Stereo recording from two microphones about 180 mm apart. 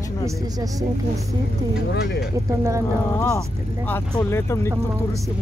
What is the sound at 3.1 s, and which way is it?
Speech, 15° left (ahead or behind).